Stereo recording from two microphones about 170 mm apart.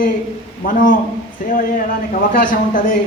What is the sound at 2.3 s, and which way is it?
Speech, 55° left (ahead or behind).